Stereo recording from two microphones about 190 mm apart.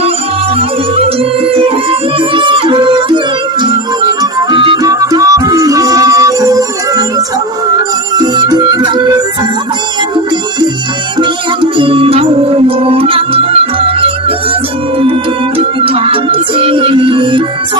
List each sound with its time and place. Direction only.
0.9 s music: 30° right (ahead or behind)
4.2 s music: 25° right (ahead or behind)
11.2 s music: 25° right (ahead or behind)